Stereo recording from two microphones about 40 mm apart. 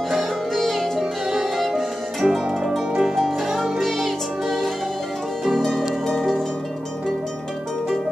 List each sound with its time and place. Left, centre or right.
0.5 s music: centre
2.2 s harp: centre
3.0 s music: centre